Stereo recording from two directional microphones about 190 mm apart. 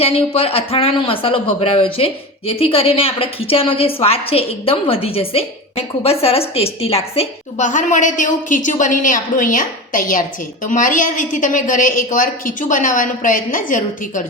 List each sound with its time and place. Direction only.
0.0 s a woman's voice: 30° left (ahead or behind)